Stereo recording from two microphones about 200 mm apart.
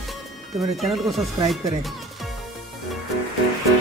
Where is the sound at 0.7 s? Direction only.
Centre (ahead or behind).